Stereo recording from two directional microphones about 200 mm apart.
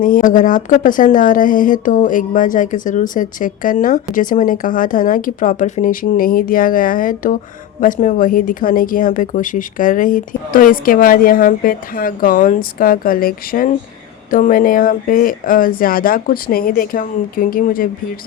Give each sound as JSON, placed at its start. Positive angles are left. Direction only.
{"t": 0.0, "sound": "speech", "side_deg": 40}